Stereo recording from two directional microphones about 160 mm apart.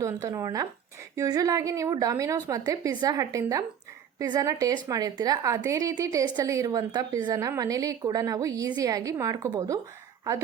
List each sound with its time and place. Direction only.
0.0 s a woman's voice: 20° right (ahead or behind)